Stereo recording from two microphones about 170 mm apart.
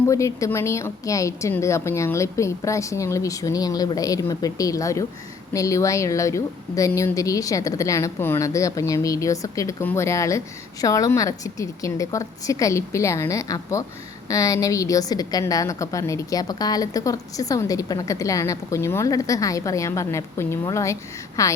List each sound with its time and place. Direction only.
0.1 s a woman's voice: 20° left (ahead or behind)